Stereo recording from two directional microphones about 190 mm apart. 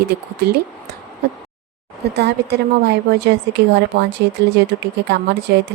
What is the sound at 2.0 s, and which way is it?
A woman's voice, 60° right (ahead or behind).